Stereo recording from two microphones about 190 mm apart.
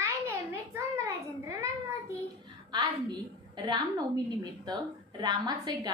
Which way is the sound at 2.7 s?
20° right (ahead or behind).